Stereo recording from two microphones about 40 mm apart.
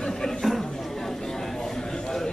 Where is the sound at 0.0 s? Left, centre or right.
Centre.